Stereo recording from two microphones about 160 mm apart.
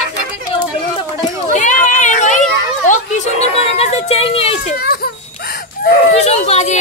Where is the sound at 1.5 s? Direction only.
50° left (ahead or behind).